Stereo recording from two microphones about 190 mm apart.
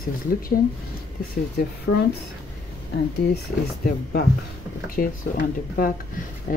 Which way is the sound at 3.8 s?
55° left (ahead or behind).